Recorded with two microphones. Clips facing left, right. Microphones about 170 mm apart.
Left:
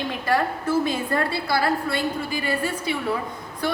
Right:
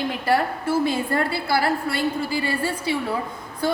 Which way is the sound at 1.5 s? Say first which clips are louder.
Even; 25° right (ahead or behind).